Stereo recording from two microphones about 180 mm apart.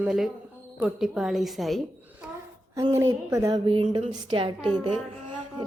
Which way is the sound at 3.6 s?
30° right (ahead or behind).